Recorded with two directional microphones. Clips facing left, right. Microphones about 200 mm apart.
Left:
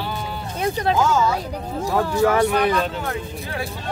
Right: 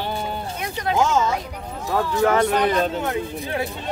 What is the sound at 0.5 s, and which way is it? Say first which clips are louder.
Speech: left 8 dB; 30° left (ahead or behind).